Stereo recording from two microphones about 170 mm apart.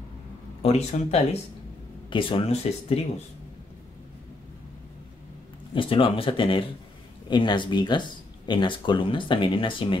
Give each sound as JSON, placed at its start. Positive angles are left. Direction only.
{"t": 0.6, "sound": "speech", "side_deg": 35}
{"t": 5.8, "sound": "speech", "side_deg": 30}